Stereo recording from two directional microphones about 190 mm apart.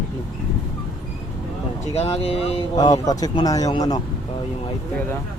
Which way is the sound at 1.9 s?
35° left (ahead or behind).